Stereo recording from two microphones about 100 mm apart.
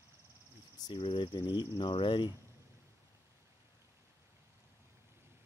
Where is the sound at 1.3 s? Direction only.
40° left (ahead or behind).